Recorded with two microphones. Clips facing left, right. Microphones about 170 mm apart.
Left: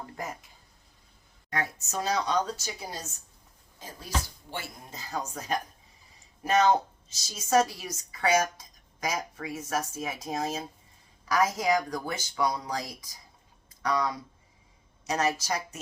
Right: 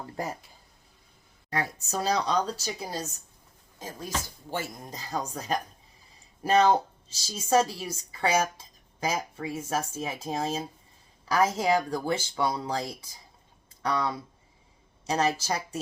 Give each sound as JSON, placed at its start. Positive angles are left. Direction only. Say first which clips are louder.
{"t": 1.5, "sound": "speech", "louder": "right 2 dB", "side_deg": -30}
{"t": 4.5, "sound": "a woman's voice", "louder": "right 5 dB", "side_deg": -40}